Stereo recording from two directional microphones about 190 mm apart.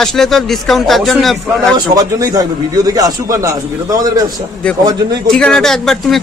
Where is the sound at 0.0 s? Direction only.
Centre (ahead or behind).